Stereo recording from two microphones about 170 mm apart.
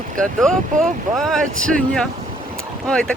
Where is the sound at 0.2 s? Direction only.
Centre (ahead or behind).